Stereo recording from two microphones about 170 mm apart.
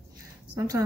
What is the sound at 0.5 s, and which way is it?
Speech, 20° right (ahead or behind).